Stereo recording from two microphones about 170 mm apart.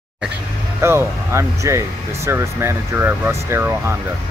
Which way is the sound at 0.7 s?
15° right (ahead or behind).